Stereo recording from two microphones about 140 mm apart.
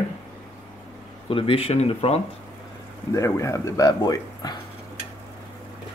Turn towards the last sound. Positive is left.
turn(degrees=30)  # may be behind; listen again after turning